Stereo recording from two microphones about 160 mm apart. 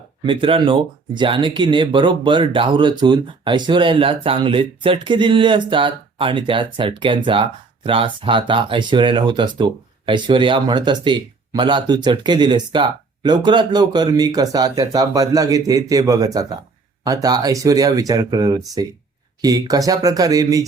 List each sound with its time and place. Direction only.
0.3 s speech: 35° right (ahead or behind)